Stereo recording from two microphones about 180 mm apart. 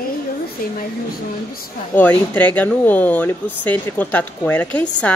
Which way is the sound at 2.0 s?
10° left (ahead or behind).